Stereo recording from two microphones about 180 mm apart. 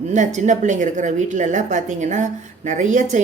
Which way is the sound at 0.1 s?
40° right (ahead or behind).